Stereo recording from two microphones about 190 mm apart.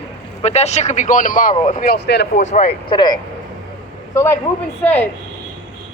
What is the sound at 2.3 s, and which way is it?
A man's voice, 40° left (ahead or behind).